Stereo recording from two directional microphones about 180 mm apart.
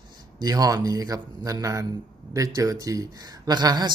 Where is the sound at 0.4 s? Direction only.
20° right (ahead or behind).